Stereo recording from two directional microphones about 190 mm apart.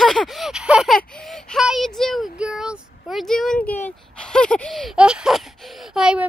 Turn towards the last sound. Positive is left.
turn(degrees=-5)  # may be behind; listen again after turning